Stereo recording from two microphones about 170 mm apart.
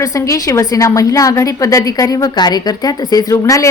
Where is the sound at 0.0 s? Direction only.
20° left (ahead or behind).